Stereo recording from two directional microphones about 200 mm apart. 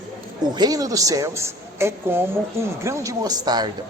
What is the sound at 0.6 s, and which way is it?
A woman's voice, 20° right (ahead or behind).